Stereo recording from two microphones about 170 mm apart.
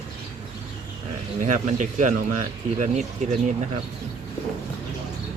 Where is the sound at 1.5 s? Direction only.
50° right (ahead or behind).